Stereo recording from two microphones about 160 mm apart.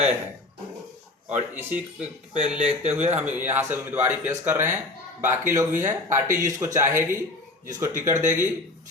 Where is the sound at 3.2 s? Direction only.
10° right (ahead or behind).